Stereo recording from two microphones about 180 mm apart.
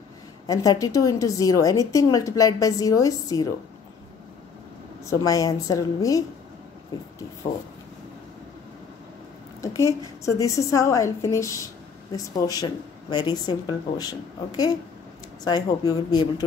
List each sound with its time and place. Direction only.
0.5 s a woman's voice: 20° left (ahead or behind)
5.0 s a woman's voice: 20° left (ahead or behind)
9.6 s a woman's voice: 15° left (ahead or behind)